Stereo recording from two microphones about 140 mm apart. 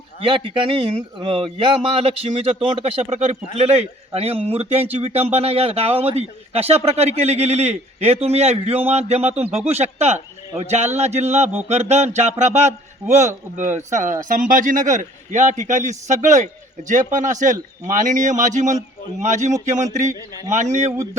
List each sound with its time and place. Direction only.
0.2 s a man's voice: 40° right (ahead or behind); by 19.5 s 60° right (ahead or behind)
20.9 s speech: 20° right (ahead or behind)